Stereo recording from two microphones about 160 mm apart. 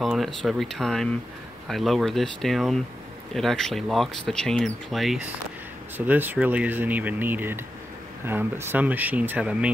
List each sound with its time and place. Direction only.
0.0 s speech: centre (ahead or behind)
5.9 s speech: 10° right (ahead or behind)